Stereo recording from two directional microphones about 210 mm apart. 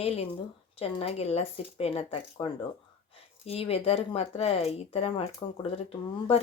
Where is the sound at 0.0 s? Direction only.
30° left (ahead or behind).